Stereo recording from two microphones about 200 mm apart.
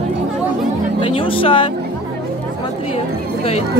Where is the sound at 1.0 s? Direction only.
25° left (ahead or behind).